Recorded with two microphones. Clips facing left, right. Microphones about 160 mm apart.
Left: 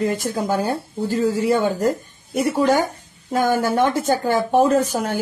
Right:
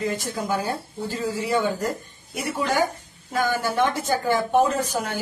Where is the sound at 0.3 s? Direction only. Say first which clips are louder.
Left 5 dB; 50° left (ahead or behind).